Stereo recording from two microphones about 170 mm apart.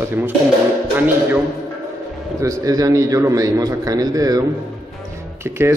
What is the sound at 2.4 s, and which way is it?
A man's voice, 20° right (ahead or behind).